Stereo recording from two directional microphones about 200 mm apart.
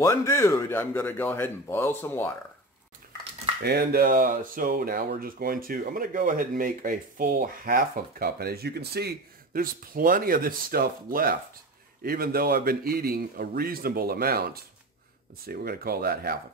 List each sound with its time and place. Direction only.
0.0 s a man's voice: 15° left (ahead or behind)
3.6 s speech: 55° right (ahead or behind)